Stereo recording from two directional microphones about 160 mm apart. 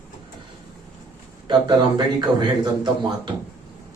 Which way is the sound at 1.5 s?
30° right (ahead or behind).